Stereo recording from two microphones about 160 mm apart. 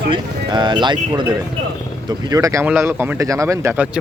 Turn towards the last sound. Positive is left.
turn(degrees=-15)  # may be behind; listen again after turning